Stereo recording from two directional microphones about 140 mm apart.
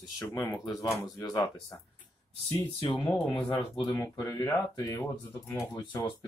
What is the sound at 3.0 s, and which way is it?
Speech, 35° left (ahead or behind).